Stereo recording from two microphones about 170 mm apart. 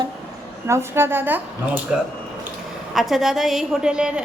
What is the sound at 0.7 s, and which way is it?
Speech, 15° right (ahead or behind).